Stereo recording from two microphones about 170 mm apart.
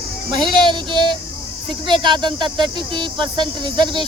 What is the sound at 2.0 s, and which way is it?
Speech, 25° right (ahead or behind).